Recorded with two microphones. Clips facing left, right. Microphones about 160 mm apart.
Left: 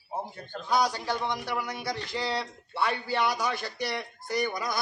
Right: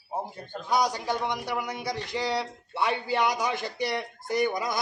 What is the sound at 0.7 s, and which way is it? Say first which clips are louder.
A man's voice: right 1 dB; 15° right (ahead or behind).